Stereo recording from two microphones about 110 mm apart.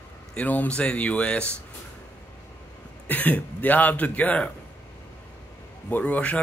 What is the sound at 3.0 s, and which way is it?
A man's voice, 15° left (ahead or behind).